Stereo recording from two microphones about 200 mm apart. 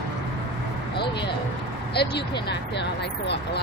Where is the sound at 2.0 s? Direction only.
55° left (ahead or behind).